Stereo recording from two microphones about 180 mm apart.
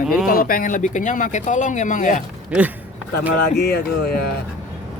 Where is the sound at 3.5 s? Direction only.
60° left (ahead or behind).